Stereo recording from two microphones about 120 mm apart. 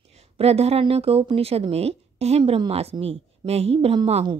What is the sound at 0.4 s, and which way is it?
A woman's voice, 60° right (ahead or behind).